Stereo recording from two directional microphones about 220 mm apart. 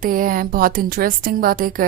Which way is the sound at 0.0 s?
40° right (ahead or behind).